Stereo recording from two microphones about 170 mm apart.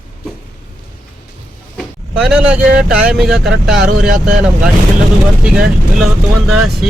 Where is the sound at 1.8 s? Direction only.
5° right (ahead or behind).